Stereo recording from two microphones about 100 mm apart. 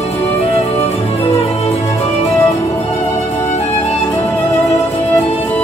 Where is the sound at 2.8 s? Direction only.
80° left.